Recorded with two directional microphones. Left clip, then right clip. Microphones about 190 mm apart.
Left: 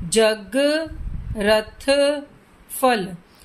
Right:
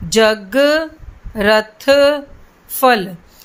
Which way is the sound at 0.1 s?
20° right (ahead or behind).